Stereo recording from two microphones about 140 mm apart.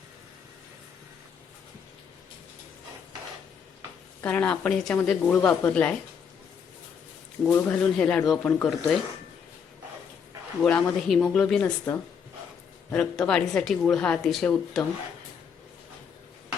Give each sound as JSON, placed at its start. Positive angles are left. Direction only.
{"t": 4.2, "sound": "speech", "side_deg": 10}
{"t": 7.5, "sound": "speech", "side_deg": 5}
{"t": 10.6, "sound": "speech", "side_deg": 10}
{"t": 11.9, "sound": "speech", "side_deg": 15}
{"t": 12.9, "sound": "speech", "side_deg": 5}